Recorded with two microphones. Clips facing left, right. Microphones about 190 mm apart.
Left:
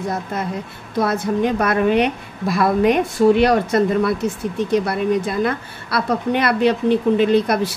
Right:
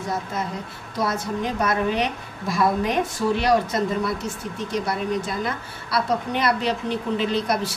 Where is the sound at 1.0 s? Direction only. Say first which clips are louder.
Left 7 dB; 60° left (ahead or behind).